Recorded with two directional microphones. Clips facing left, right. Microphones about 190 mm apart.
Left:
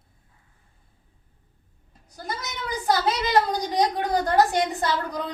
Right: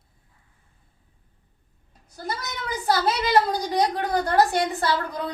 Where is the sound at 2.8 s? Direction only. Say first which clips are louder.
Right 1 dB; 20° left (ahead or behind).